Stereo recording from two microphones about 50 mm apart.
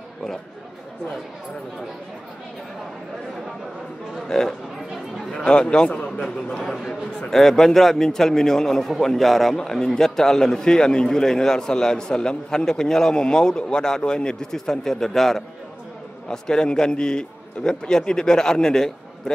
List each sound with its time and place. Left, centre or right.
4.3 s a man's voice: centre